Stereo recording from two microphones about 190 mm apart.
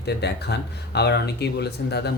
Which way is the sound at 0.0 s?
60° left (ahead or behind).